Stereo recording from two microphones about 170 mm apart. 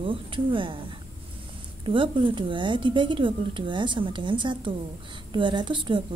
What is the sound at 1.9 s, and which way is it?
A woman's voice, 30° right (ahead or behind).